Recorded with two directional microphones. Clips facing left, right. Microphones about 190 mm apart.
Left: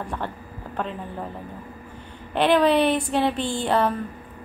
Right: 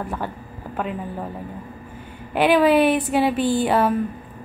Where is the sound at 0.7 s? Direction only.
5° right (ahead or behind).